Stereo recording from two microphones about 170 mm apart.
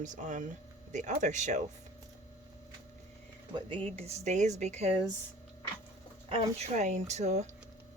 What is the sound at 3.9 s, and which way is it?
Speech, 40° right (ahead or behind).